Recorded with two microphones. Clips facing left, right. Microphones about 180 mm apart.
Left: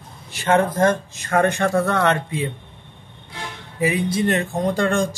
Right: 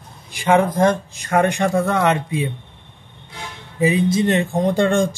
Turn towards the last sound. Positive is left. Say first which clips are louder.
# right 3 dB
turn(degrees=-25)  # may be behind; listen again after turning